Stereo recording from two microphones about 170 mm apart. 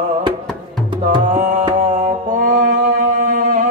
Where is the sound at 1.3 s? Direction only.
45° right (ahead or behind).